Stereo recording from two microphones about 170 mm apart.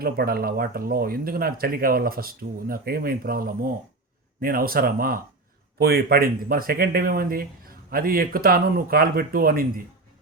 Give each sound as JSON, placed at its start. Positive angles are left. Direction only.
{"t": 0.0, "sound": "speech", "side_deg": -65}